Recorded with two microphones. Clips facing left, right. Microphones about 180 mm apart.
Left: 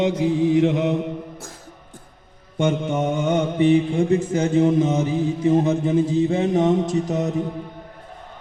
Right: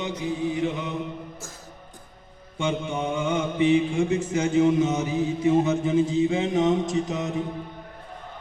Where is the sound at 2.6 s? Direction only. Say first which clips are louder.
Left 6 dB; 45° left (ahead or behind).